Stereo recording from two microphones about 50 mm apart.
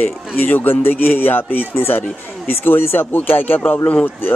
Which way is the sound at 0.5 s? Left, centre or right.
Left.